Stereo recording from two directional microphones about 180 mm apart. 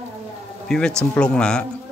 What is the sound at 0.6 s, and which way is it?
Speech, 5° left (ahead or behind).